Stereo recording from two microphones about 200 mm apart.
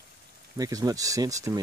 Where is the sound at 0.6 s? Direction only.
20° right (ahead or behind).